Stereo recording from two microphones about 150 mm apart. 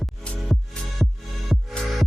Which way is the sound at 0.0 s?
Centre (ahead or behind).